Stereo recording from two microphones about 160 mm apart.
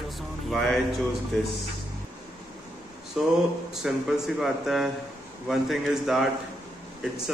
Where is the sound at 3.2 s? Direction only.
5° right (ahead or behind).